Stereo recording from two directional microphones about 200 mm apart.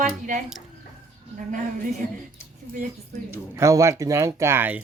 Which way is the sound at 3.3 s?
15° right (ahead or behind).